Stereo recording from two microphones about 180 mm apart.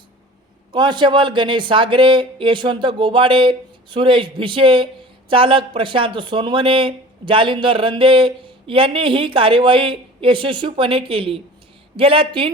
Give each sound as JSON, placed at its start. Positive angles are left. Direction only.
{"t": 0.7, "sound": "speech", "side_deg": -25}